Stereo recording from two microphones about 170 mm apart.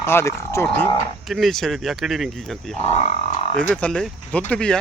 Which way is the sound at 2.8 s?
35° left (ahead or behind).